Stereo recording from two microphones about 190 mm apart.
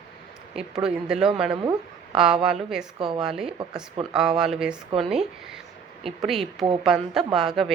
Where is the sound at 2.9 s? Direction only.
25° right (ahead or behind).